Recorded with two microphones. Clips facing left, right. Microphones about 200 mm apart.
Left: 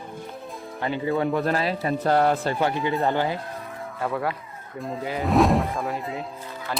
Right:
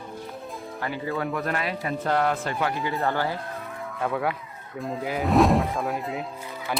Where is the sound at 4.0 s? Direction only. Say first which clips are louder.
Even; centre (ahead or behind).